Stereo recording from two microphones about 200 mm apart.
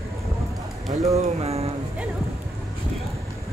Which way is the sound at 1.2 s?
30° right (ahead or behind).